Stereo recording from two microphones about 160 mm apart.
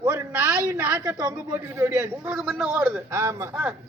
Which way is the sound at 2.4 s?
Centre (ahead or behind).